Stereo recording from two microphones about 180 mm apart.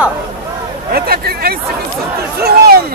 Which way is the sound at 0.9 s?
55° right (ahead or behind).